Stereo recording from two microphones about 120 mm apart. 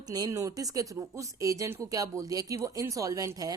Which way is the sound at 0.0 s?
30° right (ahead or behind).